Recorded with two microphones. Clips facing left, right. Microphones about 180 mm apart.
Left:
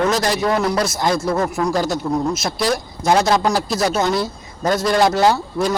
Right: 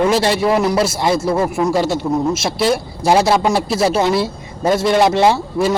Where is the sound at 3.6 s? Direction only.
30° right (ahead or behind).